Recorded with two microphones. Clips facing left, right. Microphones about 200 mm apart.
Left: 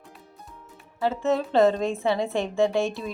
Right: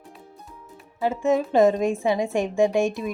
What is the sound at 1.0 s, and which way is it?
A woman's voice, 15° right (ahead or behind).